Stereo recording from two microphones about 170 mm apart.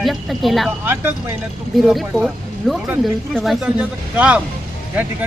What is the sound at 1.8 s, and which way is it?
Speech, centre (ahead or behind).